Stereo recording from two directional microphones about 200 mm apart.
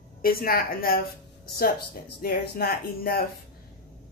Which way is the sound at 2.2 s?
50° left (ahead or behind).